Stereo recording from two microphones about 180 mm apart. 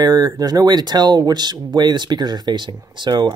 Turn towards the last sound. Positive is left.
turn(degrees=-25)  # may be behind; listen again after turning